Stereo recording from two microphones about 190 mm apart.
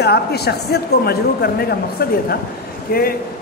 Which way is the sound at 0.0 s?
60° left (ahead or behind).